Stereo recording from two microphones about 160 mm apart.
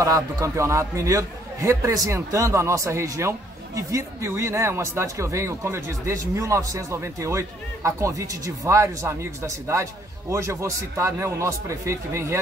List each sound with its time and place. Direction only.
0.0 s a man's voice: 20° right (ahead or behind)